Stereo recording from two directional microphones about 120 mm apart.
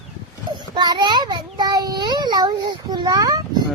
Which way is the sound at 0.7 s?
35° right (ahead or behind).